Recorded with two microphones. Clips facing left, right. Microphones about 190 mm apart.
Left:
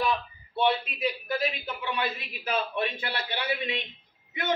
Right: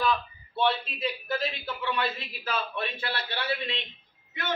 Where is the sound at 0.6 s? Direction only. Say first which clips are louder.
Left 1 dB; 15° left (ahead or behind).